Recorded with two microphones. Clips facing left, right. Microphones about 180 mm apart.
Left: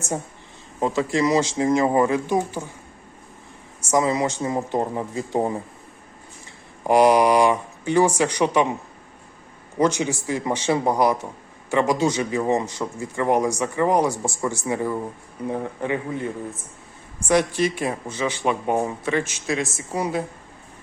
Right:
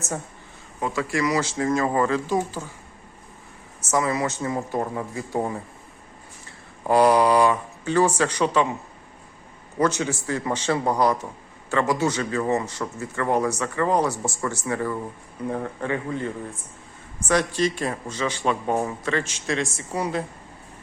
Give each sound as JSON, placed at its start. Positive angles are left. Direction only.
{"t": 0.8, "sound": "speech", "side_deg": 25}
{"t": 3.9, "sound": "speech", "side_deg": 20}
{"t": 6.8, "sound": "a man's voice", "side_deg": 15}
{"t": 9.7, "sound": "a man's voice", "side_deg": 15}